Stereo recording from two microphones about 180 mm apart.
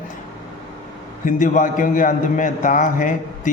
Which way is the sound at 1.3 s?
45° left (ahead or behind).